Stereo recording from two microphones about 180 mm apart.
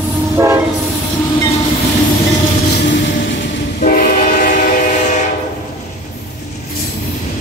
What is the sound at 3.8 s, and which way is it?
Train, 50° left (ahead or behind).